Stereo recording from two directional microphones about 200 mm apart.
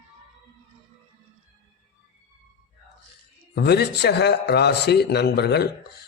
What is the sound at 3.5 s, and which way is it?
A man's voice, 55° left (ahead or behind).